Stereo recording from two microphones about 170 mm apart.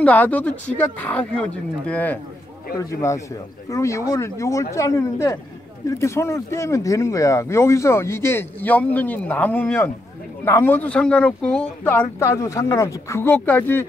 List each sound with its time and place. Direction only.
0.0 s speech: 10° left (ahead or behind)
3.7 s speech: 20° left (ahead or behind)